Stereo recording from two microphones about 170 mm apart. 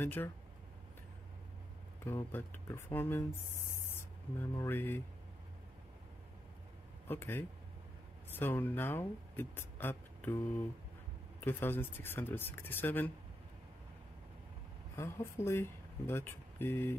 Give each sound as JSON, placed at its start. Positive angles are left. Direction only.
{"t": 0.0, "sound": "speech", "side_deg": 10}
{"t": 2.0, "sound": "speech", "side_deg": 15}
{"t": 7.1, "sound": "speech", "side_deg": 10}
{"t": 11.4, "sound": "speech", "side_deg": 10}
{"t": 15.0, "sound": "speech", "side_deg": 15}